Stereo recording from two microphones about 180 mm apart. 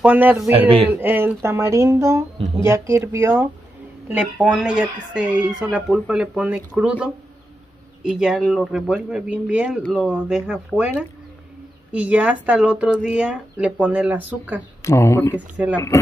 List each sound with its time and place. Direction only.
0.0 s speech: 10° right (ahead or behind)
0.5 s a man's voice: 30° right (ahead or behind)
0.8 s speech: 10° right (ahead or behind)
14.8 s speech: 15° left (ahead or behind)
15.3 s speech: 10° right (ahead or behind)
15.7 s speech: 15° left (ahead or behind)